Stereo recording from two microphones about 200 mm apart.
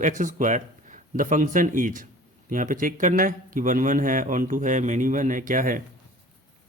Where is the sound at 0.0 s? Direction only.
40° right (ahead or behind).